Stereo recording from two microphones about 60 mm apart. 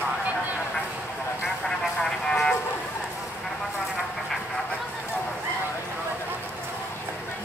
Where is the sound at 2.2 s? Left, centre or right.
Centre.